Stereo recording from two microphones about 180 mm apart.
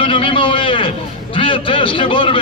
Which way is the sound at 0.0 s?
30° left (ahead or behind).